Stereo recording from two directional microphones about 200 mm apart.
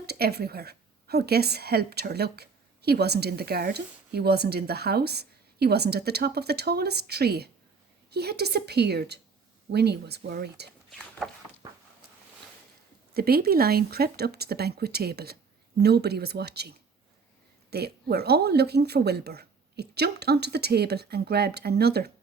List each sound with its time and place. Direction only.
0.0 s a woman's voice: 50° right (ahead or behind)
11.2 s a sound: centre (ahead or behind)
13.1 s a woman's voice: 50° right (ahead or behind)
17.7 s a woman's voice: 55° right (ahead or behind)